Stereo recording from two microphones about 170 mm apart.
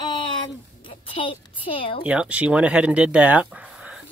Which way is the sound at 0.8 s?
30° left (ahead or behind).